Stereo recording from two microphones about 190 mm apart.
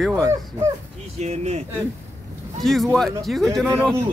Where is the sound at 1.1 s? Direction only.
35° right (ahead or behind).